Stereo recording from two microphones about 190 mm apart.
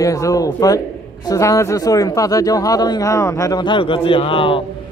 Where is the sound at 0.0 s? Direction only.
15° left (ahead or behind).